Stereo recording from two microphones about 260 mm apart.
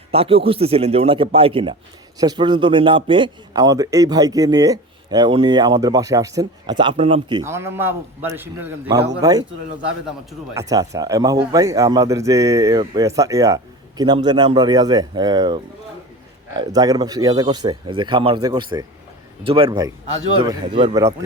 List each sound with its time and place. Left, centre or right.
0.1 s a man's voice: right